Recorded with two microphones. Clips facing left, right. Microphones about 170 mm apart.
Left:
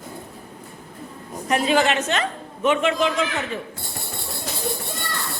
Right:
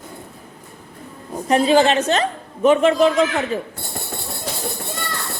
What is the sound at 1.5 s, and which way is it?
A woman's voice, 30° right (ahead or behind).